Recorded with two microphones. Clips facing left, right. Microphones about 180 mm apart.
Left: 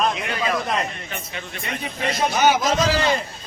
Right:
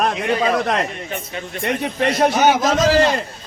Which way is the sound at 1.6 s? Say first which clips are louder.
Right 8 dB; 60° right (ahead or behind).